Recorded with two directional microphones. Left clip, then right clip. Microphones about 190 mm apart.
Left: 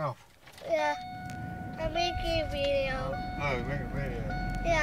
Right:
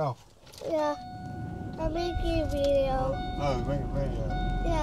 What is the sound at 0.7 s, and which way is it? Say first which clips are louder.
Speech: even; 20° right (ahead or behind).